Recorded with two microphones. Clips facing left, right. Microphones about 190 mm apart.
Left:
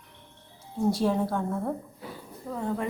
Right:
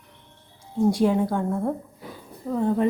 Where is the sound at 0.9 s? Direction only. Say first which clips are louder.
Right 3 dB; 15° right (ahead or behind).